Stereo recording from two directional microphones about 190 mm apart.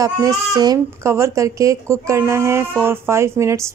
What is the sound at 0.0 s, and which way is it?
A woman's voice, 20° right (ahead or behind).